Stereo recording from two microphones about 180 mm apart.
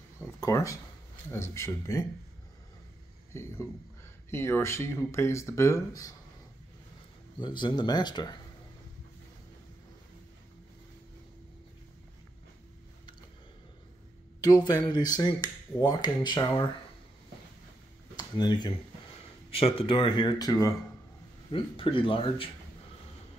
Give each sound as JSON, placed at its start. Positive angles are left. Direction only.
{"t": 0.2, "sound": "a sound", "side_deg": 15}
{"t": 1.3, "sound": "speech", "side_deg": 15}
{"t": 4.3, "sound": "speech", "side_deg": 15}
{"t": 7.3, "sound": "speech", "side_deg": 25}
{"t": 14.4, "sound": "speech", "side_deg": 20}
{"t": 18.1, "sound": "speech", "side_deg": 25}